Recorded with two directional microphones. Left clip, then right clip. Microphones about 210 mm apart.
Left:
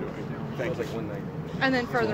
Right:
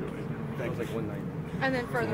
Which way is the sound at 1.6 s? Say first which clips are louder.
Left 4 dB; 45° left (ahead or behind).